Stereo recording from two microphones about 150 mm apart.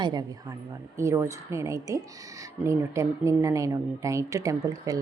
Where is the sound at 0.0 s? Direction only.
25° right (ahead or behind).